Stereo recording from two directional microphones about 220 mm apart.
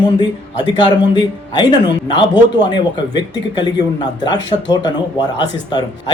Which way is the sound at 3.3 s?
20° left (ahead or behind).